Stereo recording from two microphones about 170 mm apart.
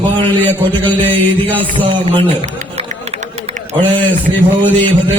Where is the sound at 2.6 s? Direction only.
40° right (ahead or behind).